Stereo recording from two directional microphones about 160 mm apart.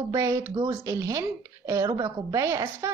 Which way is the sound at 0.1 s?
20° right (ahead or behind).